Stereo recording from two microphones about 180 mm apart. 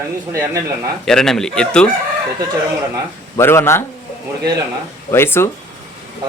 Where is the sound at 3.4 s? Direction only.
15° left (ahead or behind).